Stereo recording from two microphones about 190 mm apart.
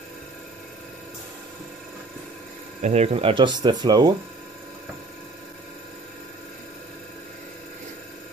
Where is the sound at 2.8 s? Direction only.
35° right (ahead or behind).